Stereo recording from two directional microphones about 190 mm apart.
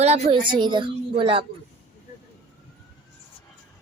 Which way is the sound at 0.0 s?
35° right (ahead or behind).